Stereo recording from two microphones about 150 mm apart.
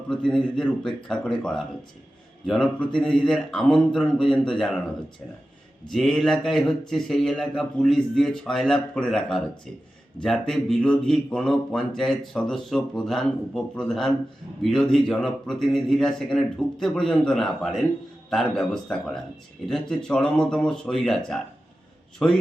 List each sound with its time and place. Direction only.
0.1 s speech: 5° left (ahead or behind)
5.9 s speech: 5° left (ahead or behind)